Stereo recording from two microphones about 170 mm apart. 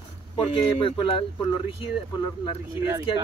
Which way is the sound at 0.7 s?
30° left (ahead or behind).